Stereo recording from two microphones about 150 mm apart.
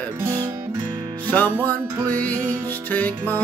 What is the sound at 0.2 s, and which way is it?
Music, 20° right (ahead or behind).